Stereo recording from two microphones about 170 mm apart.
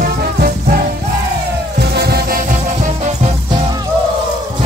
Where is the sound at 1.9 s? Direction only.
70° right (ahead or behind); by 3.3 s 50° right (ahead or behind).